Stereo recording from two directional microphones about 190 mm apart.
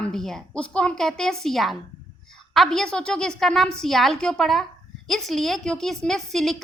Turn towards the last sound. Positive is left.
turn(degrees=0)  # may be behind; listen again after turning